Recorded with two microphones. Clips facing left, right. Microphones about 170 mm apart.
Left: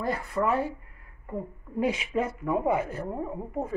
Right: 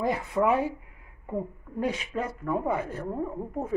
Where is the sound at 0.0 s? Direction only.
20° right (ahead or behind).